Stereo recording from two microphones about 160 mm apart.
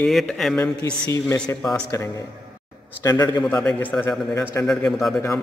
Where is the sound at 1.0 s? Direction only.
20° left (ahead or behind).